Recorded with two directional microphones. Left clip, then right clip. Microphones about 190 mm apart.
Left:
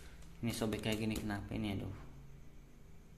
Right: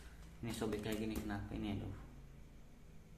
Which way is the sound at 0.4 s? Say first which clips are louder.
Left 3 dB; 35° left (ahead or behind).